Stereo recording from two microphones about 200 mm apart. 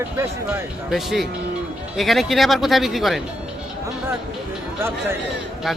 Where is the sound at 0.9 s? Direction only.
Centre (ahead or behind).